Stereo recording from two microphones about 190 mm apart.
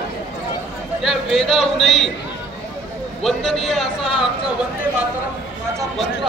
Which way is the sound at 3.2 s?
Centre (ahead or behind).